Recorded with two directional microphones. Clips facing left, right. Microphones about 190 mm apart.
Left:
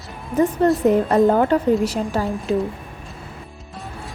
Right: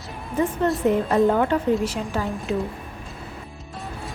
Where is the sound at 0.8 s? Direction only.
40° left (ahead or behind).